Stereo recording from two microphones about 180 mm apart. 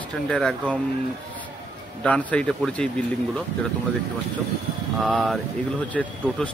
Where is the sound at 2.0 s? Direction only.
5° left (ahead or behind).